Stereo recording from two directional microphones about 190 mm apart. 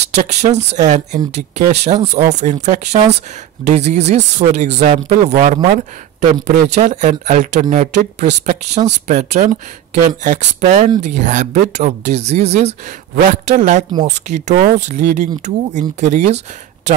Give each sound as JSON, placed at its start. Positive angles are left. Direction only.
{"t": 0.0, "sound": "speech", "side_deg": -35}
{"t": 14.5, "sound": "speech", "side_deg": -55}
{"t": 14.9, "sound": "speech", "side_deg": -40}